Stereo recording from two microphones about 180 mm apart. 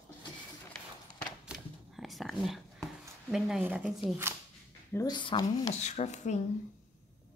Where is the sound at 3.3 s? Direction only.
Centre (ahead or behind).